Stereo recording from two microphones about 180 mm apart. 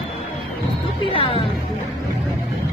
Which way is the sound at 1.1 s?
30° left (ahead or behind).